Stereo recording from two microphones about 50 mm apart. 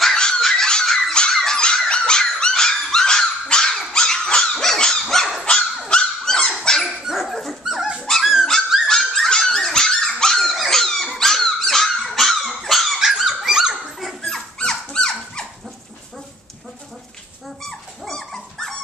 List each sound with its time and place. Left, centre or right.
0.0 s a sound: centre
1.3 s dog: centre
7.0 s dog: centre
8.0 s dog: centre
13.0 s dog: centre
13.9 s dog: centre
14.6 s dog: centre
17.6 s dog: centre